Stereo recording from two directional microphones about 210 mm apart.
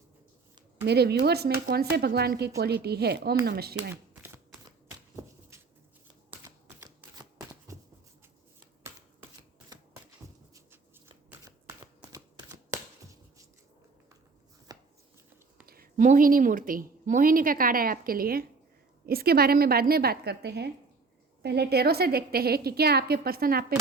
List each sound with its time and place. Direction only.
0.9 s a woman's voice: 50° right (ahead or behind)
6.3 s shuffling cards: 15° right (ahead or behind)
11.3 s shuffling cards: 10° right (ahead or behind)
14.7 s chopping: 20° right (ahead or behind)
15.6 s a woman's voice: 45° right (ahead or behind)